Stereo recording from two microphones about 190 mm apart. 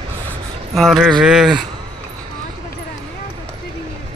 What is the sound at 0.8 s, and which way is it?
Speech, centre (ahead or behind).